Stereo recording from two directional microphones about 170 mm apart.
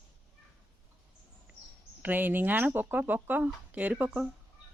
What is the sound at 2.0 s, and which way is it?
Speech, 10° right (ahead or behind).